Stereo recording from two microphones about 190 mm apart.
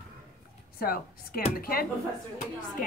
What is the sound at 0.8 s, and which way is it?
Speech, 50° left (ahead or behind).